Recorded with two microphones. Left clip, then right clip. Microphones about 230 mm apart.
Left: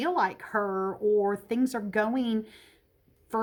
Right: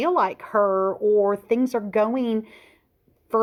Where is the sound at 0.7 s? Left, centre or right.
Right.